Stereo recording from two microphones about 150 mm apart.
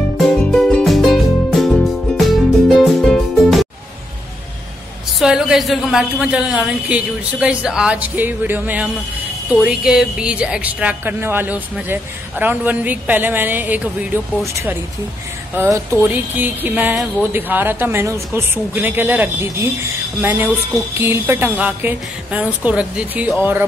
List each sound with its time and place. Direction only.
0.2 s music: centre (ahead or behind)
5.2 s speech: 5° right (ahead or behind)